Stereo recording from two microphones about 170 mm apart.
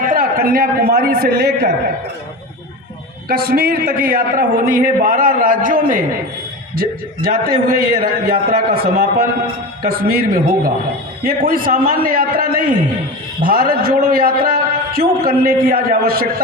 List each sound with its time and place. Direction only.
0.0 s a man's voice: 55° right (ahead or behind)
3.2 s a man's voice: 65° right (ahead or behind)